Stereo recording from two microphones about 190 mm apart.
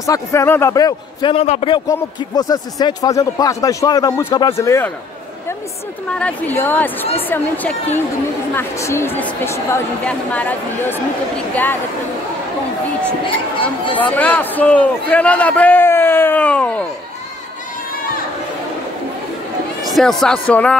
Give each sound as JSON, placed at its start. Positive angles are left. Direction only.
{"t": 0.0, "sound": "speech", "side_deg": 15}
{"t": 1.9, "sound": "speech", "side_deg": 20}
{"t": 6.0, "sound": "a man's voice", "side_deg": 5}
{"t": 13.9, "sound": "a man's voice", "side_deg": 10}
{"t": 19.9, "sound": "speech", "side_deg": 0}